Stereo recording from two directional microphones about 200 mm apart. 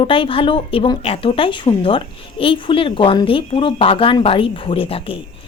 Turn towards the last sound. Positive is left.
turn(degrees=30)  # may be behind; listen again after turning